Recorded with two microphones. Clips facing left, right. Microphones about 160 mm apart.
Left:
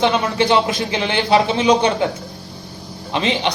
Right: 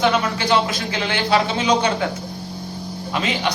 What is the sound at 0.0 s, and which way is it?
A man's voice, 25° left (ahead or behind).